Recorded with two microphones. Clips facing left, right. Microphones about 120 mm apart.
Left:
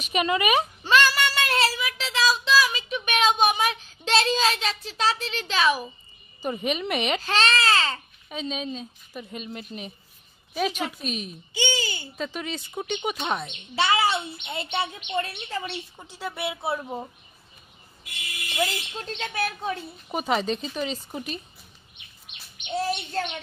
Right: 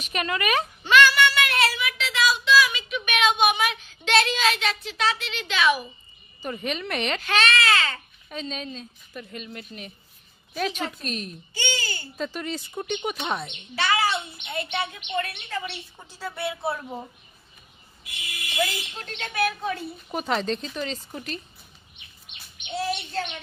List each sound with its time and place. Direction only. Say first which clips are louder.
0.0 s a woman's voice: left 4 dB; 15° left (ahead or behind)
0.8 s child singing: right 4 dB; 35° left (ahead or behind)
6.4 s a woman's voice: left 3 dB; 15° left (ahead or behind)
7.2 s speech: even; 30° left (ahead or behind)
8.3 s a woman's voice: left 2 dB; 10° left (ahead or behind)
12.2 s speech: right 2 dB; centre (ahead or behind)
13.7 s a child's voice: left 1 dB; 25° left (ahead or behind)
18.9 s a child's voice: right 2 dB; 30° left (ahead or behind)
20.1 s a woman's voice: left 1 dB; 10° left (ahead or behind)
22.7 s a child's voice: left 1 dB; 40° left (ahead or behind)